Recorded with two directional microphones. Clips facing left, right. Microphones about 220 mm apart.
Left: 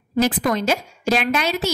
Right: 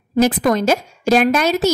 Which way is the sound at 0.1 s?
45° right (ahead or behind).